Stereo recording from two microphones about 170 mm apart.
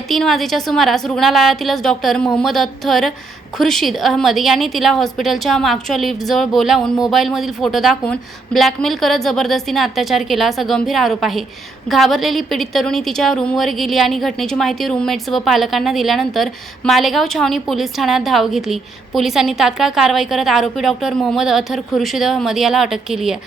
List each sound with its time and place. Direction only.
0.1 s a woman's voice: centre (ahead or behind)